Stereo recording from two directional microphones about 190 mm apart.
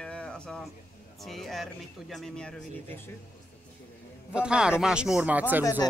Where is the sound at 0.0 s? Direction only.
5° left (ahead or behind).